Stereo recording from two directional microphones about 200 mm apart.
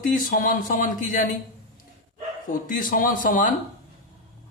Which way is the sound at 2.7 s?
40° left (ahead or behind).